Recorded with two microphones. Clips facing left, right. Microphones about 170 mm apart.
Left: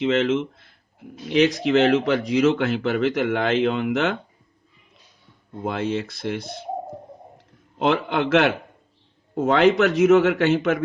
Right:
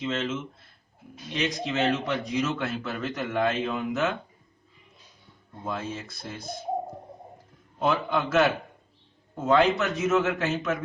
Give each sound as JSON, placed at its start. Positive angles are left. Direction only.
{"t": 0.0, "sound": "a man's voice", "side_deg": 75}
{"t": 1.3, "sound": "a man's voice", "side_deg": 90}
{"t": 5.6, "sound": "a man's voice", "side_deg": 80}
{"t": 7.8, "sound": "a man's voice", "side_deg": 70}